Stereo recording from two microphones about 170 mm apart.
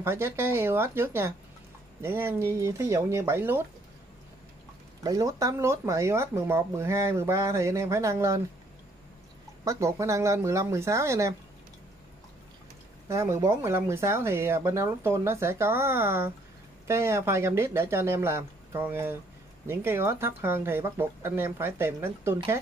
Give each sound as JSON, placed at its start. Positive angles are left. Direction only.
{"t": 0.0, "sound": "speech", "side_deg": -15}
{"t": 5.0, "sound": "speech", "side_deg": -20}
{"t": 9.7, "sound": "speech", "side_deg": -20}
{"t": 13.1, "sound": "speech", "side_deg": -15}